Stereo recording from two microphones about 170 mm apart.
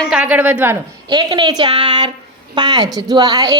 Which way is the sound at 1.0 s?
25° right (ahead or behind).